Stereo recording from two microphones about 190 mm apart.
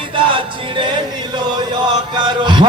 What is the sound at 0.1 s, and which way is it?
Chant, 25° right (ahead or behind).